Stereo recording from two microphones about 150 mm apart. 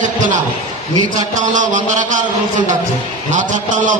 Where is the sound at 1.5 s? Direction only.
55° right (ahead or behind).